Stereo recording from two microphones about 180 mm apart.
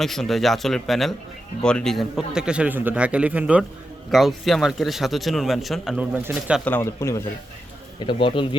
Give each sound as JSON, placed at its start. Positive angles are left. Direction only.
{"t": 0.0, "sound": "speech", "side_deg": 0}
{"t": 6.7, "sound": "speech", "side_deg": 15}
{"t": 7.9, "sound": "speech", "side_deg": 30}